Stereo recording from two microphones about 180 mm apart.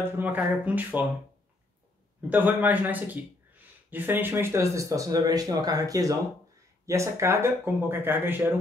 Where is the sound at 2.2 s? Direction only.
10° right (ahead or behind).